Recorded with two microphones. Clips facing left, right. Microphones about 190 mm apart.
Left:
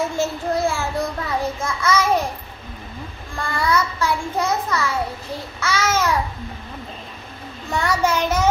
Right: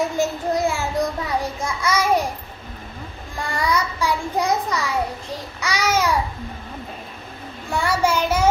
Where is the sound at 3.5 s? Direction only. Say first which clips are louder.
Left 2 dB; 15° right (ahead or behind).